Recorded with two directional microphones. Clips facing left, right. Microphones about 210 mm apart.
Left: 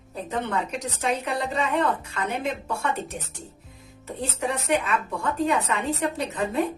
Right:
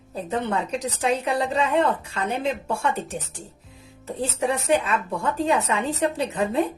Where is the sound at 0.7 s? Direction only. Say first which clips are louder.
Right 3 dB; 30° right (ahead or behind).